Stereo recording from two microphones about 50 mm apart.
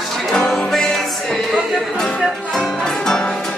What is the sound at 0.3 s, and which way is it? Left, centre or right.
Music, centre.